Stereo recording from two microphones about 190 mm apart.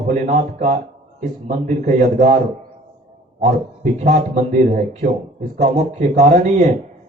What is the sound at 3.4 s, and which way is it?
A man's voice, 40° right (ahead or behind).